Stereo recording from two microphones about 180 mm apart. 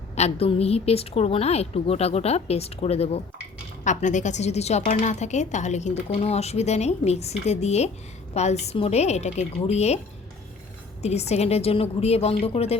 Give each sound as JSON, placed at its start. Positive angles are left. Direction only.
{"t": 0.2, "sound": "a woman's voice", "side_deg": 35}
{"t": 11.0, "sound": "a woman's voice", "side_deg": 35}